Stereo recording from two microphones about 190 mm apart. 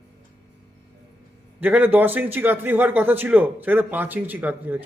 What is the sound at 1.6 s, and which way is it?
A man's voice, 10° right (ahead or behind).